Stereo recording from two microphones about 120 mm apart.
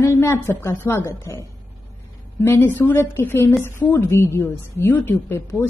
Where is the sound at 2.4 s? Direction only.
20° left (ahead or behind).